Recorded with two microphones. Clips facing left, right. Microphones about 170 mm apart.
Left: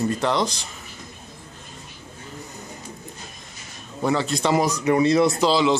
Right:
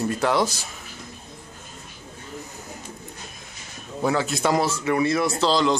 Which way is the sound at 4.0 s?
Centre (ahead or behind).